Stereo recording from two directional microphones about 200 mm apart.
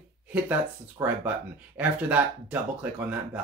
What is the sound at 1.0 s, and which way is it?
Speech, 20° right (ahead or behind).